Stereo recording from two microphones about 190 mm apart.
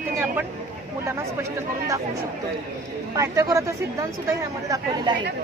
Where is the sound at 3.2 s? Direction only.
15° right (ahead or behind).